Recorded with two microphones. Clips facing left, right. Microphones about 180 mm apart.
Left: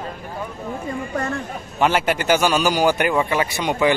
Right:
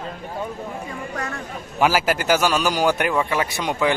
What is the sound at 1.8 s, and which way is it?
A man's voice, 5° right (ahead or behind).